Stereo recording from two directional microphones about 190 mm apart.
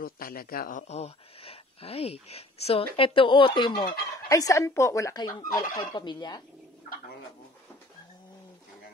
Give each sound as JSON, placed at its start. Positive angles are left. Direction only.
{"t": 0.0, "sound": "a woman's voice", "side_deg": 50}
{"t": 5.6, "sound": "fowl", "side_deg": 25}